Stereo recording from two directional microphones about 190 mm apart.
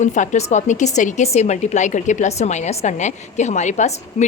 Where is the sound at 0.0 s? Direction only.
40° left (ahead or behind).